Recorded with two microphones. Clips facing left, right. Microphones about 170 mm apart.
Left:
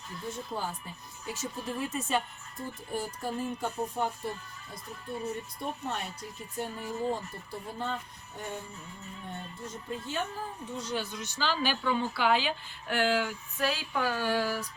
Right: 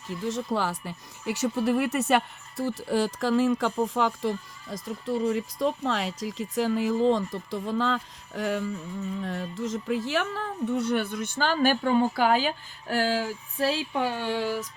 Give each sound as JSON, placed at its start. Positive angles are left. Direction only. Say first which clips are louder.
{"t": 0.1, "sound": "speech", "louder": "right 9 dB", "side_deg": -85}